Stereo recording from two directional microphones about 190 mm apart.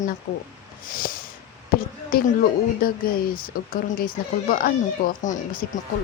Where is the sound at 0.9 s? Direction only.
45° left (ahead or behind).